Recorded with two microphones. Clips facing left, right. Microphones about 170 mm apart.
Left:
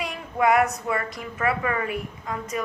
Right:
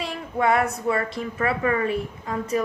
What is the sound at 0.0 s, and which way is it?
A woman's voice, 30° right (ahead or behind).